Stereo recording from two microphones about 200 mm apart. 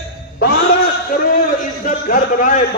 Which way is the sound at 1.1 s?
40° left (ahead or behind).